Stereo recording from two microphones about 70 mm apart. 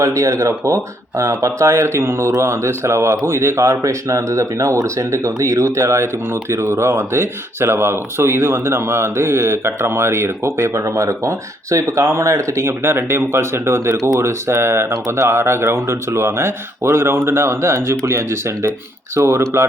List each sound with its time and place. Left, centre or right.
0.0 s speech: right
13.9 s speech: right
14.2 s speech: right